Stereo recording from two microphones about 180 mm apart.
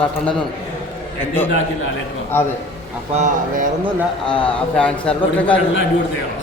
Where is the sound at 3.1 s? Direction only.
40° right (ahead or behind).